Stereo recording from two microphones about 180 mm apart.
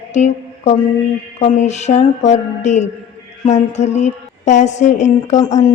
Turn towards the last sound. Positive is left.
turn(degrees=15)  # may be behind; listen again after turning